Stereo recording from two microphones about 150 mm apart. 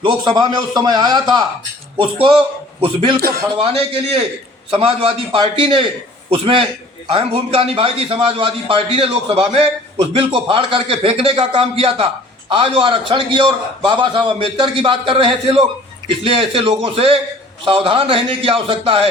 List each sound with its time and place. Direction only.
0.0 s a man's voice: 30° right (ahead or behind)
3.2 s speech: 90° right
3.5 s a man's voice: 40° right (ahead or behind)